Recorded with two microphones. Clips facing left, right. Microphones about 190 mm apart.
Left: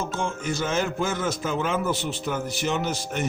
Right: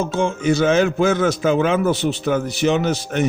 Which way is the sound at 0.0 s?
70° right (ahead or behind).